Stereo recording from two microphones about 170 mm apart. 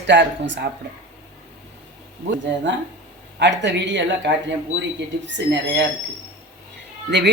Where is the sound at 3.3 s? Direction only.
90° right.